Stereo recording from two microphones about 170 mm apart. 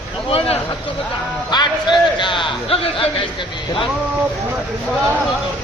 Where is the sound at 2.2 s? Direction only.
30° left (ahead or behind).